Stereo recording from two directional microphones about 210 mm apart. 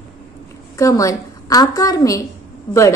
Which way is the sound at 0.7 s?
15° left (ahead or behind).